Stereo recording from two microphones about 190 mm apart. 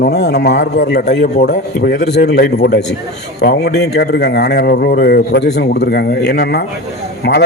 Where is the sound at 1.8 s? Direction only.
50° left (ahead or behind).